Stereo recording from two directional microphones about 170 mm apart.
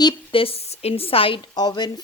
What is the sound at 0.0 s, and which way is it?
A woman's voice, 30° left (ahead or behind).